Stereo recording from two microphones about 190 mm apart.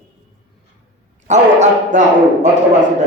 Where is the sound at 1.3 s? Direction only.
40° right (ahead or behind).